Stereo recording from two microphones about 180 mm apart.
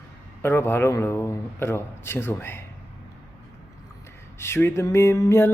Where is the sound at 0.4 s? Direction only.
15° left (ahead or behind).